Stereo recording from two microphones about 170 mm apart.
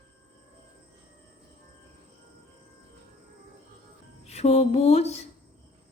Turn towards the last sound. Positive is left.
turn(degrees=40)  # may be behind; listen again after turning